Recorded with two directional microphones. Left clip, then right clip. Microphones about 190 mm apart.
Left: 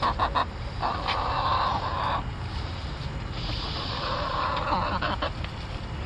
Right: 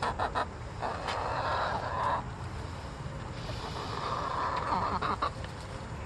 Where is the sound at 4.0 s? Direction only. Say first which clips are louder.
Left 4 dB; 35° right (ahead or behind).